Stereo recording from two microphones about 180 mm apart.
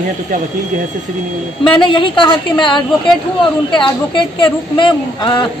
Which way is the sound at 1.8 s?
30° left (ahead or behind).